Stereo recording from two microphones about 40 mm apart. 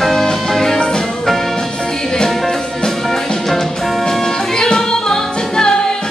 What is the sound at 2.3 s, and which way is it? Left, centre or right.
Music, centre.